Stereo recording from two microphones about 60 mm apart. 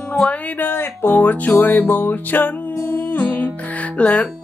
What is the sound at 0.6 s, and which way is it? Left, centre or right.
Music, left.